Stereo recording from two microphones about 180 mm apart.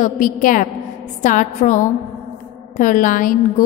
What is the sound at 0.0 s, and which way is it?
A woman's voice, 45° left (ahead or behind).